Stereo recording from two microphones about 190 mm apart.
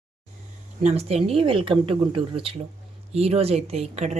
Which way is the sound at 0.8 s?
35° right (ahead or behind).